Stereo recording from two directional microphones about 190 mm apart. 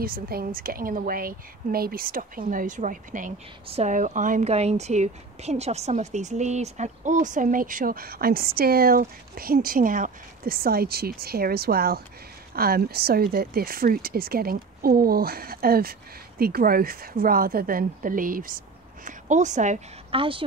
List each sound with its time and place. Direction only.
0.0 s a woman's voice: 50° right (ahead or behind)
20.2 s speech: 25° right (ahead or behind)